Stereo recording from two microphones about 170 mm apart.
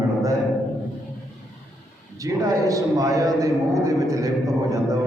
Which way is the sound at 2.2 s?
20° right (ahead or behind).